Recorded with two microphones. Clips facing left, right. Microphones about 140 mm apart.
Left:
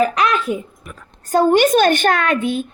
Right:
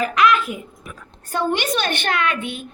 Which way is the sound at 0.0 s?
35° left (ahead or behind).